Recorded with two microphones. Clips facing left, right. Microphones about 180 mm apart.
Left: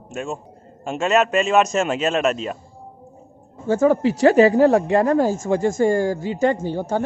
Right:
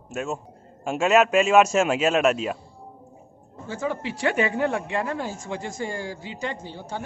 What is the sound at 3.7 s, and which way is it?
Speech, 45° left (ahead or behind).